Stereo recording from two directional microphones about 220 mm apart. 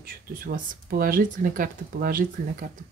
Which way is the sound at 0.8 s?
40° right (ahead or behind).